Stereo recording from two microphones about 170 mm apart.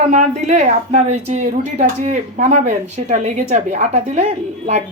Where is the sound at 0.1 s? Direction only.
45° right (ahead or behind).